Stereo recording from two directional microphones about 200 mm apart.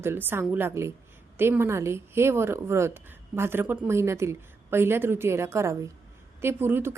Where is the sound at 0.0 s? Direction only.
10° right (ahead or behind).